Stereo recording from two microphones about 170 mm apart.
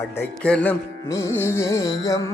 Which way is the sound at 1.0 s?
20° left (ahead or behind).